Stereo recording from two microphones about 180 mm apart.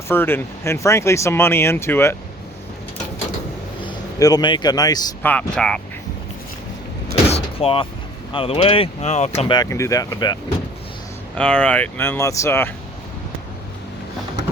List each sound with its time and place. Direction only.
0.1 s speech: 10° left (ahead or behind)
3.8 s speech: 20° left (ahead or behind)
5.2 s speech: 10° left (ahead or behind)
7.3 s door: 35° left (ahead or behind)
8.3 s speech: 30° left (ahead or behind)
9.6 s speech: 15° left (ahead or behind)
11.3 s speech: 5° left (ahead or behind)